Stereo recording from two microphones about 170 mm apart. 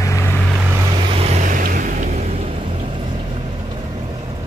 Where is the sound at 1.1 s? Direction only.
45° right (ahead or behind).